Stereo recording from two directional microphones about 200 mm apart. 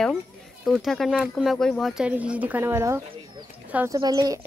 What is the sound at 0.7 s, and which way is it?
A woman's voice, centre (ahead or behind).